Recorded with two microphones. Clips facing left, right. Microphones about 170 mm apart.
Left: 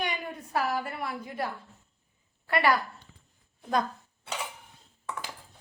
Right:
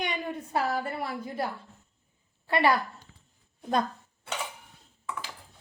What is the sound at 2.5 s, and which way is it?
Speech, 25° right (ahead or behind).